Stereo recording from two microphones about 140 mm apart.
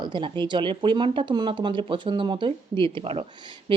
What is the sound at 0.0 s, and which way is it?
Speech, 35° right (ahead or behind).